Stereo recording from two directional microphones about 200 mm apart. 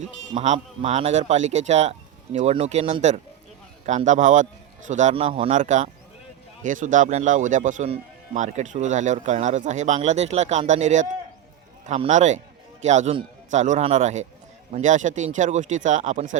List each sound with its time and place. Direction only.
0.0 s speech: 35° right (ahead or behind)